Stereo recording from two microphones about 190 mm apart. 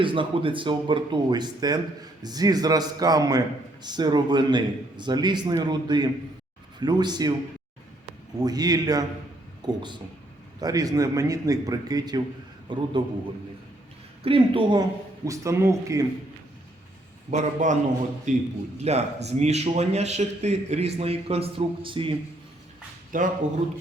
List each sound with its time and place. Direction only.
0.0 s speech: 25° right (ahead or behind)
8.4 s a man's voice: 20° right (ahead or behind)
14.3 s speech: 30° right (ahead or behind)
17.3 s speech: 40° right (ahead or behind)
23.1 s speech: 45° right (ahead or behind)